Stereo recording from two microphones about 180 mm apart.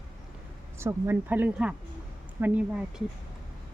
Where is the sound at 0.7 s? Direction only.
15° right (ahead or behind).